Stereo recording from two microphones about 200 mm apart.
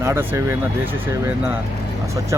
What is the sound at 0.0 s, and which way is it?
Speech, 15° right (ahead or behind).